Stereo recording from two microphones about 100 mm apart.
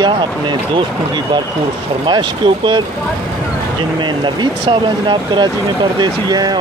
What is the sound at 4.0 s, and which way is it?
Speech, 50° right (ahead or behind).